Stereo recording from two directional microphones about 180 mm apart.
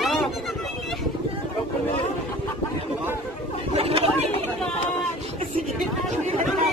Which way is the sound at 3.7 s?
35° right (ahead or behind).